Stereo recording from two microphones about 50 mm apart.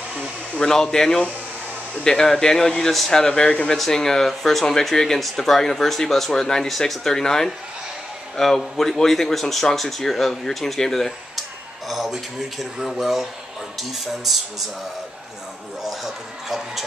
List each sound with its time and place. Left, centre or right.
0.6 s speech: centre
3.7 s speech: centre
15.8 s a sound: centre